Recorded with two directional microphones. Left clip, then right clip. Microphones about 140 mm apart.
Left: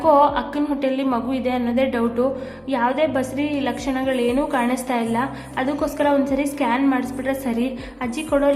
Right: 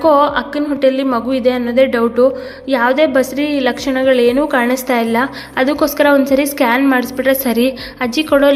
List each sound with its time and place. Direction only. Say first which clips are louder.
0.0 s a woman's voice: right 4 dB; 30° right (ahead or behind)